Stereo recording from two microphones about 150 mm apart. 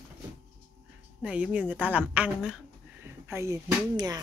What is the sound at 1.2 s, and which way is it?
A woman's voice, 10° right (ahead or behind).